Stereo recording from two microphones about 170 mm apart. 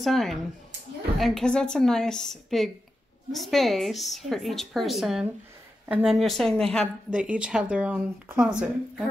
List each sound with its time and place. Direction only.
0.0 s a woman's voice: centre (ahead or behind)
7.1 s speech: 5° right (ahead or behind)